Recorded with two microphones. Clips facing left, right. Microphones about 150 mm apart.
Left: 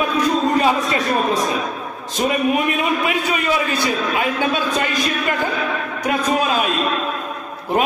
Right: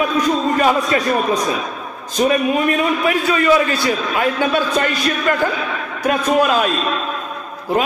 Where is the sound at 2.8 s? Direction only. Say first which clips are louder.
Right 3 dB; 20° left (ahead or behind).